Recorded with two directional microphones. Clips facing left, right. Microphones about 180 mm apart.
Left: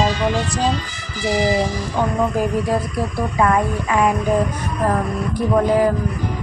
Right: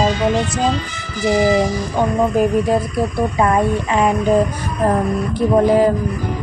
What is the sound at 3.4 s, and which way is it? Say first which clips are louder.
Speech: right 1 dB; 25° right (ahead or behind).